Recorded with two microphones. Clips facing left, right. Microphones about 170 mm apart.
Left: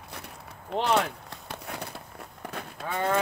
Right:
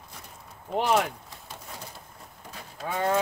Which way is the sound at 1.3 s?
65° left (ahead or behind).